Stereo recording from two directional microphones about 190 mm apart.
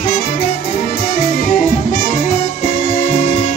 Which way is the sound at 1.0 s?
45° left (ahead or behind).